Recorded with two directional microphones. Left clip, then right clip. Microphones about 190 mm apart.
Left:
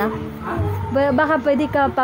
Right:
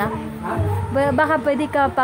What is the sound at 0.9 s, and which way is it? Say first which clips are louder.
A woman's voice: left 1 dB; 15° left (ahead or behind).